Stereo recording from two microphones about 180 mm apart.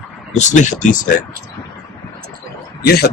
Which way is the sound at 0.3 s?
40° left (ahead or behind).